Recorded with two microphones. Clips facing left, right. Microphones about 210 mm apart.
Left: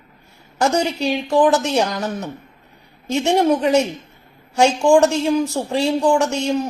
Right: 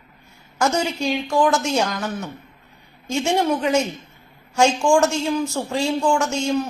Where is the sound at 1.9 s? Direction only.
40° left (ahead or behind).